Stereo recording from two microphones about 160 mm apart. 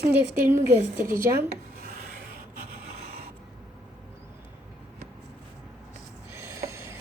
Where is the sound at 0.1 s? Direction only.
15° right (ahead or behind).